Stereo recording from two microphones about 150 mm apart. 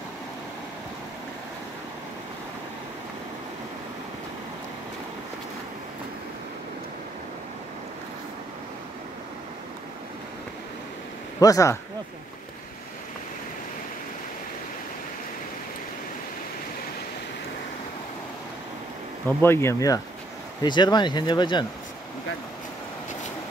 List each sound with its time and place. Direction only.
11.3 s speech: 25° left (ahead or behind)
19.2 s speech: 15° left (ahead or behind)